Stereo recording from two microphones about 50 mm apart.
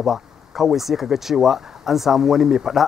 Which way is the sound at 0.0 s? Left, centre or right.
Centre.